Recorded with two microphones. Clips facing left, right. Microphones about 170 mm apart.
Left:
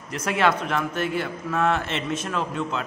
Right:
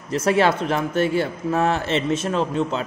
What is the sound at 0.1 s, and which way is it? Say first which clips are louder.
A man's voice: right 4 dB; 30° right (ahead or behind).